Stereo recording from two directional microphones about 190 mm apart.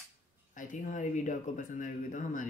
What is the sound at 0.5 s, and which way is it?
Speech, 40° left (ahead or behind).